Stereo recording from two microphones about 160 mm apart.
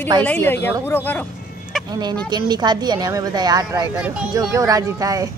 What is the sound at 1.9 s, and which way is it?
A woman's voice, 25° right (ahead or behind).